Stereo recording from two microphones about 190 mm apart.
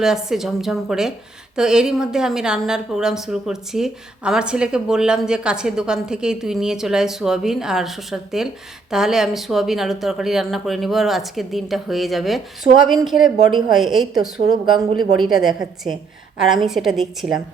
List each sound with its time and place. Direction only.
0.0 s a woman's voice: centre (ahead or behind)
14.4 s a woman's voice: 20° right (ahead or behind)
15.2 s a woman's voice: centre (ahead or behind)